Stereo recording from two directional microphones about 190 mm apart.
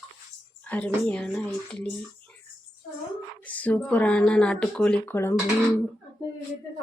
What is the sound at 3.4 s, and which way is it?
Speech, 10° left (ahead or behind).